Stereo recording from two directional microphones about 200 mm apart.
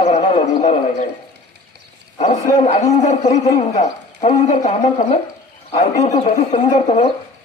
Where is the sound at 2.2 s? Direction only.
35° left (ahead or behind).